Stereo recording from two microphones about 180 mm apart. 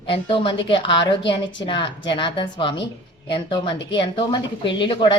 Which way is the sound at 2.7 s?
75° left (ahead or behind).